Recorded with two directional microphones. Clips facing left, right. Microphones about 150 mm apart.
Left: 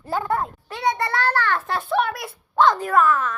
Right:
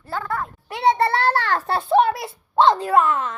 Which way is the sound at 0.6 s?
25° right (ahead or behind).